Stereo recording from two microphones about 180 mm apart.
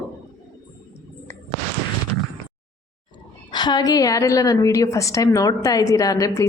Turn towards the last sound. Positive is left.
turn(degrees=15)  # may be behind; listen again after turning